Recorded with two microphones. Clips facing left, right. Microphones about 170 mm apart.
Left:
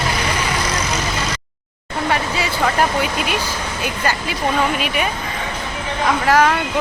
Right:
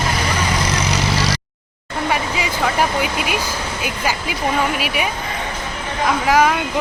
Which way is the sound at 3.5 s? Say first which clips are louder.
Even; 10° right (ahead or behind).